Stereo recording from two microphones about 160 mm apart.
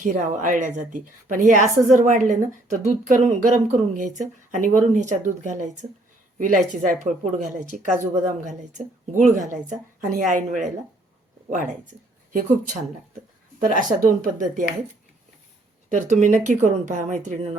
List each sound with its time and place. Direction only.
0.0 s a woman's voice: 55° right (ahead or behind)
12.3 s a woman's voice: 55° right (ahead or behind)
14.0 s speech: 55° right (ahead or behind)
15.9 s a woman's voice: 50° right (ahead or behind)